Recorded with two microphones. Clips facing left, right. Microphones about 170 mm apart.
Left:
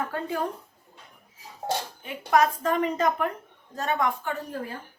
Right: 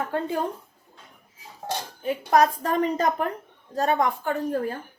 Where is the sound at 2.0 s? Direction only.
40° right (ahead or behind).